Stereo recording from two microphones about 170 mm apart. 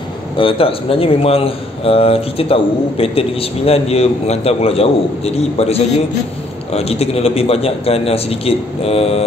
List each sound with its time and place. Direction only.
0.4 s a man's voice: 30° left (ahead or behind)